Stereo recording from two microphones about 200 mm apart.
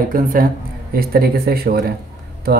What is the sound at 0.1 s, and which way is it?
Speech, 45° right (ahead or behind).